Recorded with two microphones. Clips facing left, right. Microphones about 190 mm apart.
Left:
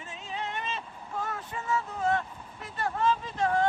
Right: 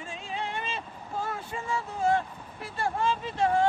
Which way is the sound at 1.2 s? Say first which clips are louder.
Right 1 dB; 30° right (ahead or behind).